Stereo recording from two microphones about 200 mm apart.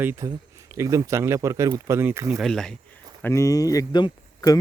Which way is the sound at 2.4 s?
Centre (ahead or behind).